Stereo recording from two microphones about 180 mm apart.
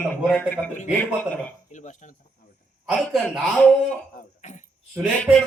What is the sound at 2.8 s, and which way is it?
Speech, centre (ahead or behind).